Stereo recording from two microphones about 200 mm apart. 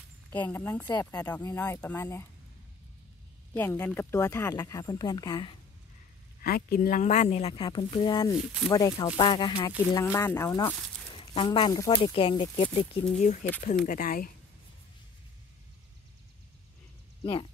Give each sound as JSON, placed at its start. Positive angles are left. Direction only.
{"t": 0.3, "sound": "speech", "side_deg": 10}
{"t": 0.8, "sound": "speech", "side_deg": 20}
{"t": 3.5, "sound": "speech", "side_deg": 10}
{"t": 6.4, "sound": "speech", "side_deg": 50}
{"t": 10.1, "sound": "speech", "side_deg": 15}
{"t": 11.1, "sound": "speech", "side_deg": 25}
{"t": 17.2, "sound": "speech", "side_deg": 25}